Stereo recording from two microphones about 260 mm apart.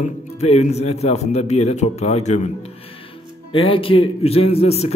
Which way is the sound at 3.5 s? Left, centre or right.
Centre.